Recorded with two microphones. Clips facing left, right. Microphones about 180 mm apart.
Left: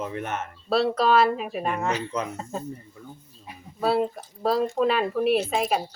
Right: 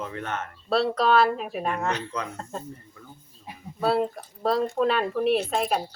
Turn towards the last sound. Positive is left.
turn(degrees=5)  # may be behind; listen again after turning